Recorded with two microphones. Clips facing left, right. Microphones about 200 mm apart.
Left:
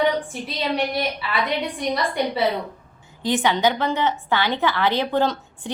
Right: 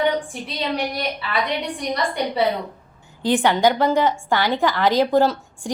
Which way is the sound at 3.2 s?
15° right (ahead or behind).